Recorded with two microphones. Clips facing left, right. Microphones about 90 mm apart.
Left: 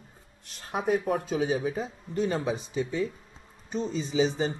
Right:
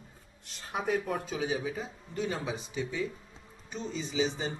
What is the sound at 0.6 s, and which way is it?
Speech, 45° left (ahead or behind).